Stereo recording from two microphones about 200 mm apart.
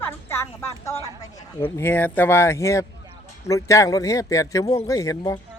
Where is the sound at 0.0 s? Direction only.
10° left (ahead or behind).